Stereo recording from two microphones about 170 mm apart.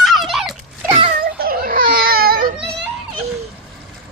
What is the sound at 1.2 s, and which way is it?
Baby cry, 60° right (ahead or behind).